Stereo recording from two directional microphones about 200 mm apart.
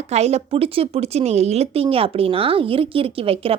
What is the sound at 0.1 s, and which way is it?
Speech, 35° right (ahead or behind).